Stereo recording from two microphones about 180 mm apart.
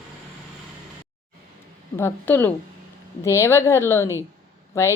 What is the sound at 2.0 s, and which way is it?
Speech, 10° left (ahead or behind).